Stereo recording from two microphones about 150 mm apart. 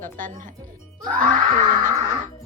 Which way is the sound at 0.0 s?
65° right (ahead or behind).